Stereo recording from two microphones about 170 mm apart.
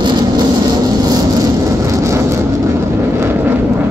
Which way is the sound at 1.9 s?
15° right (ahead or behind).